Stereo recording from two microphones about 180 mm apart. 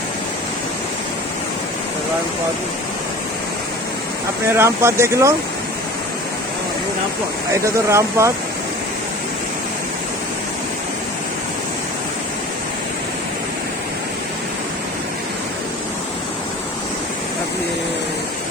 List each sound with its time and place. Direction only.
4.5 s speech: 15° right (ahead or behind)
7.6 s speech: 15° right (ahead or behind)